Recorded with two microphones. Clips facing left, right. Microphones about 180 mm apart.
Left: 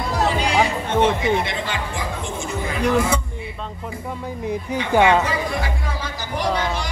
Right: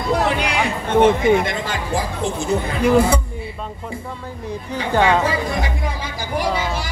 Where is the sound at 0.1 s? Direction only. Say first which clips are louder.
Right 1 dB; 60° right (ahead or behind); by 2.0 s 45° right (ahead or behind).